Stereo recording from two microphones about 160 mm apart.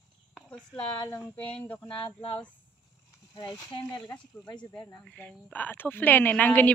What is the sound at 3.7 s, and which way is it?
Speech, 30° left (ahead or behind).